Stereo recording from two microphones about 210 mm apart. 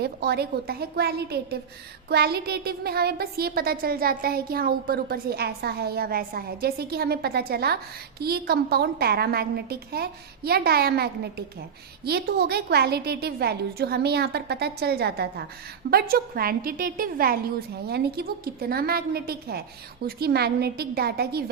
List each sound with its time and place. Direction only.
0.0 s speech: 50° right (ahead or behind)